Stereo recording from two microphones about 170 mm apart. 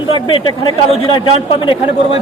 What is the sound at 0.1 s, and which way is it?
A man's voice, 30° left (ahead or behind).